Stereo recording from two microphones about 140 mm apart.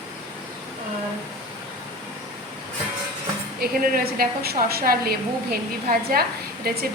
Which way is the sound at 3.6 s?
90° right.